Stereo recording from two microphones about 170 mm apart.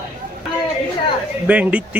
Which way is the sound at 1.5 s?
10° right (ahead or behind).